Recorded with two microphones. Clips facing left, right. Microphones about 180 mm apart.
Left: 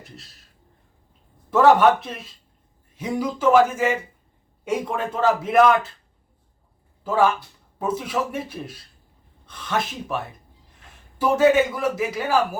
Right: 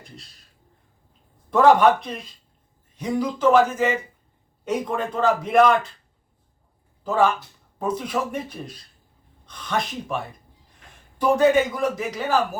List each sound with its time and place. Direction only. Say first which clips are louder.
1.5 s a man's voice: even; 5° left (ahead or behind)
7.0 s a man's voice: even; 10° left (ahead or behind)
11.2 s a man's voice: left 1 dB; 5° left (ahead or behind)